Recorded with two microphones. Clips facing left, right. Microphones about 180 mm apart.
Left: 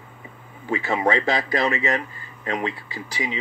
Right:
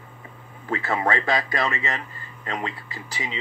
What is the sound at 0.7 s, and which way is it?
Speech, 20° left (ahead or behind).